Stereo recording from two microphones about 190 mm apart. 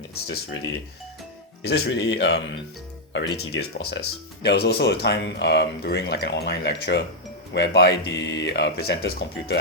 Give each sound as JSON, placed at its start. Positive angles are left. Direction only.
{"t": 0.1, "sound": "speech", "side_deg": 65}
{"t": 1.6, "sound": "speech", "side_deg": 65}